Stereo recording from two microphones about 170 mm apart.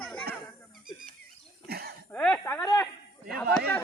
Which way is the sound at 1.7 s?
65° right (ahead or behind).